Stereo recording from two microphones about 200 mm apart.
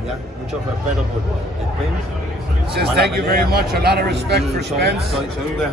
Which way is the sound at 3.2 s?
50° right (ahead or behind).